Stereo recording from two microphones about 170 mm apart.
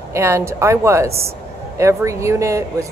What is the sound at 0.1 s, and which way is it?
Speech, 15° right (ahead or behind).